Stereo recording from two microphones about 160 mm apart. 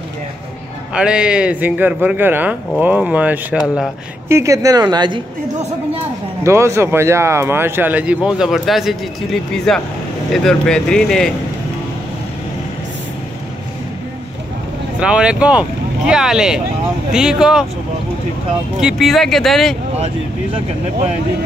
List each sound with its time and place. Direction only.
0.9 s speech: 5° right (ahead or behind)
4.3 s speech: 20° right (ahead or behind)
6.4 s speech: 15° right (ahead or behind); by 11.3 s 5° left (ahead or behind)
15.0 s speech: 5° right (ahead or behind)
18.8 s speech: centre (ahead or behind)